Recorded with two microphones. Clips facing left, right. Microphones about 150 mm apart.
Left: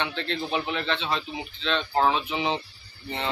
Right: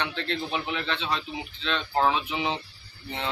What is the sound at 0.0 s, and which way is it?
Speech, centre (ahead or behind).